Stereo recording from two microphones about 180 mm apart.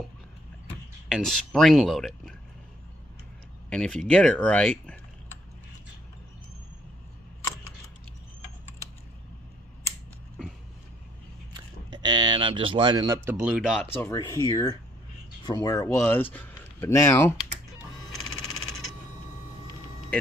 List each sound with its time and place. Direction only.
1.0 s speech: centre (ahead or behind)
3.7 s speech: 5° left (ahead or behind)
11.5 s a sound: 25° right (ahead or behind); by 13.8 s centre (ahead or behind)
13.9 s speech: 15° left (ahead or behind)